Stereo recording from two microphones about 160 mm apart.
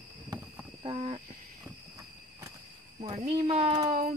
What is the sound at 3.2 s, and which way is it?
Speech, 35° right (ahead or behind).